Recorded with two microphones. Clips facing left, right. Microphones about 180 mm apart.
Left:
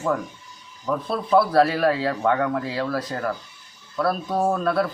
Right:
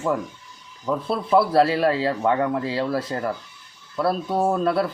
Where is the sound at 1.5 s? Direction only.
25° right (ahead or behind).